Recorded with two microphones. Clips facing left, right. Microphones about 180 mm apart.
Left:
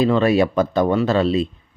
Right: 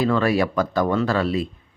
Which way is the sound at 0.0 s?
20° left (ahead or behind).